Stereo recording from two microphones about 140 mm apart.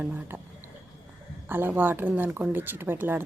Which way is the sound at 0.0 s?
10° right (ahead or behind).